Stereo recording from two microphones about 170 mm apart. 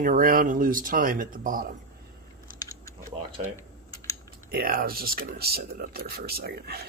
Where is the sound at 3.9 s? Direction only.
20° left (ahead or behind).